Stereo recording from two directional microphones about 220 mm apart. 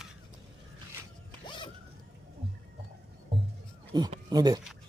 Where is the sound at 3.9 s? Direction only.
20° right (ahead or behind).